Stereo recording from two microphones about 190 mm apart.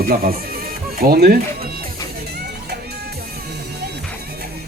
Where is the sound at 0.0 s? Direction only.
50° right (ahead or behind).